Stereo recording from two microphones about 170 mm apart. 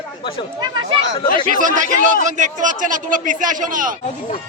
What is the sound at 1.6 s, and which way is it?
A man's voice, 50° right (ahead or behind).